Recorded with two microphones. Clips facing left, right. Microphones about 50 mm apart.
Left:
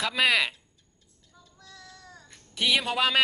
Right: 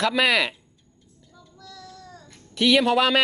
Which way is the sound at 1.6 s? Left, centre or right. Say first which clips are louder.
Right 6 dB; left.